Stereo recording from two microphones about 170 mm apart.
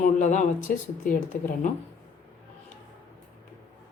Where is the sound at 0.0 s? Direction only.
45° left (ahead or behind).